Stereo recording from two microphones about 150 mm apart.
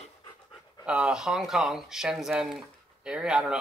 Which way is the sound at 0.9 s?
5° right (ahead or behind).